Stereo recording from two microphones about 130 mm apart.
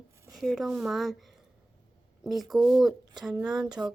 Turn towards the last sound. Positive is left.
turn(degrees=-5)  # may be behind; listen again after turning